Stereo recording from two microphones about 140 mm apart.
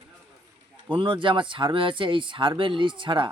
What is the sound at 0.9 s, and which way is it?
Speech, 35° right (ahead or behind).